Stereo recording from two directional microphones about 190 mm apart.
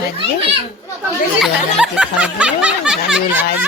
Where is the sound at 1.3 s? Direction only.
5° right (ahead or behind).